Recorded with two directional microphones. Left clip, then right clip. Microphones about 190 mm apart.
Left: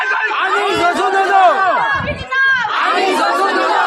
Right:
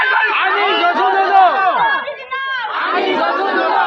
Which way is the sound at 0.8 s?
55° left (ahead or behind).